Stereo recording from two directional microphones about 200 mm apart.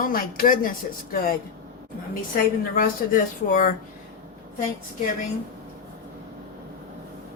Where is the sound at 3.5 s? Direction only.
40° left (ahead or behind).